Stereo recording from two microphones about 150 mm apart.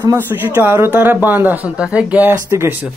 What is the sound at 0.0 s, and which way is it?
Speech, 15° right (ahead or behind).